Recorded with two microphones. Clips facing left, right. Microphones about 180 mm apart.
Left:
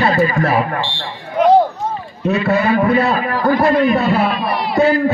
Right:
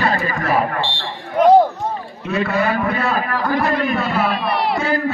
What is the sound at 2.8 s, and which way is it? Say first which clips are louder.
A man's voice: left 5 dB; 35° left (ahead or behind).